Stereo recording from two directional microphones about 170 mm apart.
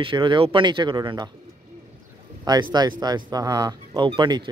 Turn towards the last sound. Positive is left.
turn(degrees=-30)  # may be behind; listen again after turning